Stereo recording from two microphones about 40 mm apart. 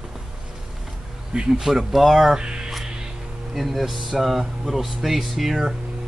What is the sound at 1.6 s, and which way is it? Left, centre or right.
Speech, centre.